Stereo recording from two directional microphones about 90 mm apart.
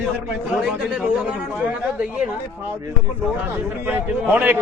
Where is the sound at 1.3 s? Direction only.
15° right (ahead or behind).